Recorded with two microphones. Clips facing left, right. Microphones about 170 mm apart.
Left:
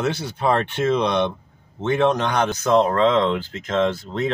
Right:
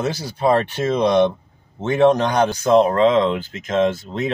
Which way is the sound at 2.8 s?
20° right (ahead or behind).